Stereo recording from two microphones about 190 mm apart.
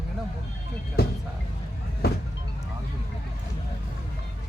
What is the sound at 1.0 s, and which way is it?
Speech, 55° left (ahead or behind).